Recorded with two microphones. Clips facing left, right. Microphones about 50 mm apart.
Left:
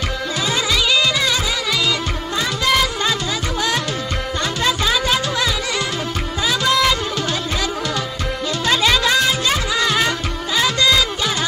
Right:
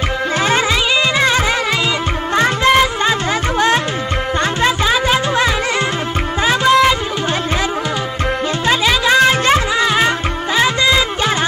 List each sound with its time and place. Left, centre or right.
0.4 s music: right
8.8 s music: right
9.2 s music: right
9.8 s music: right